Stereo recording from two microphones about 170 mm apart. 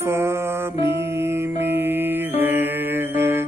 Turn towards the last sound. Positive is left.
turn(degrees=-15)  # may be behind; listen again after turning